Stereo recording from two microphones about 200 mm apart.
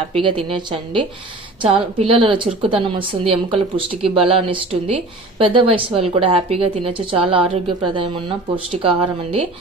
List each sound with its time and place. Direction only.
0.1 s a woman's voice: 25° right (ahead or behind)